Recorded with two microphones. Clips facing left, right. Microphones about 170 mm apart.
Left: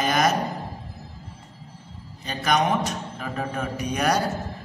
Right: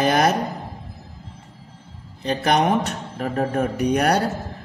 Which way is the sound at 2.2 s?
60° right (ahead or behind).